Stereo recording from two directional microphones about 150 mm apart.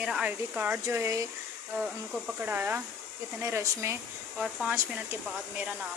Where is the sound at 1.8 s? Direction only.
10° right (ahead or behind).